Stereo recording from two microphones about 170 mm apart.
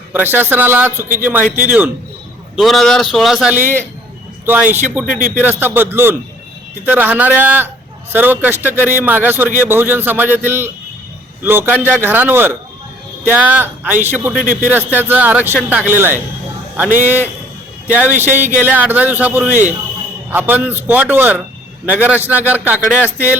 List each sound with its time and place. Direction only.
0.1 s a man's voice: 10° right (ahead or behind)
3.5 s a man's voice: 10° right (ahead or behind)
5.0 s speech: 55° right (ahead or behind)
5.4 s a man's voice: 10° right (ahead or behind)
17.8 s a man's voice: 10° right (ahead or behind)